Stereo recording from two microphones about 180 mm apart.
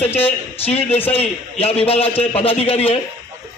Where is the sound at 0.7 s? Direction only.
35° left (ahead or behind).